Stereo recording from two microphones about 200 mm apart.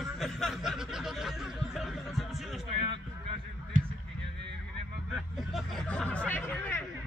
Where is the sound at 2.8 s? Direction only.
25° right (ahead or behind).